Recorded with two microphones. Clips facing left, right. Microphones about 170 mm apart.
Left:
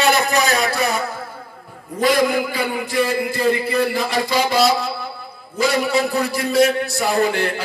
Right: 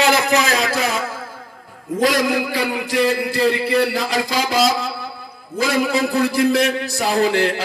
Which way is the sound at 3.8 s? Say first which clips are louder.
Right 1 dB; 90° right.